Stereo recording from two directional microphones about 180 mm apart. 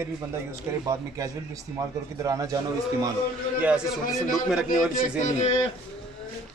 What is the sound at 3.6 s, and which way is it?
A man's voice, 5° right (ahead or behind).